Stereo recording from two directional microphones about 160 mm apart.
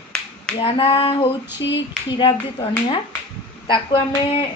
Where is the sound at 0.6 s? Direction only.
35° left (ahead or behind).